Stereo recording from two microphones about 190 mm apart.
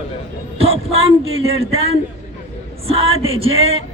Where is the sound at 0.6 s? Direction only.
30° right (ahead or behind).